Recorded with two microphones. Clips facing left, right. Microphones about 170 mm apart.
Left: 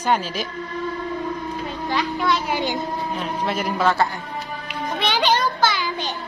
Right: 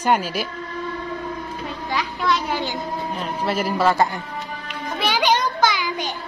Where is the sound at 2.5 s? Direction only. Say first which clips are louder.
Left 2 dB; 15° left (ahead or behind).